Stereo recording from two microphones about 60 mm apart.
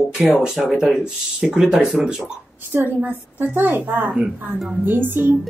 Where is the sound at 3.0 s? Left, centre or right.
Right.